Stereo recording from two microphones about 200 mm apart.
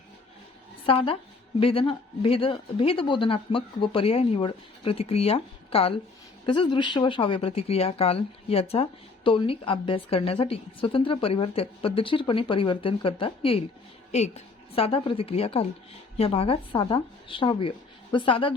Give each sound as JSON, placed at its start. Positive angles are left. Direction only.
{"t": 0.9, "sound": "speech", "side_deg": 30}